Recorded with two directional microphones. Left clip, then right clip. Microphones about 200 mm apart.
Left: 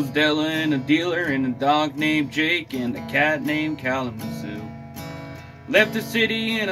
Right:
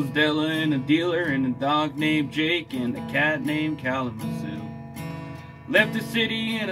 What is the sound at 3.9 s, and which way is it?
Music, 45° right (ahead or behind).